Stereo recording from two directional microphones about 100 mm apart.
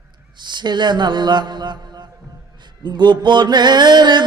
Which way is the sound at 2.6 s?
50° right (ahead or behind).